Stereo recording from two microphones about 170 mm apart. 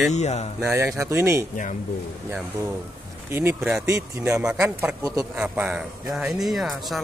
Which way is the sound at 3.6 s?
Centre (ahead or behind).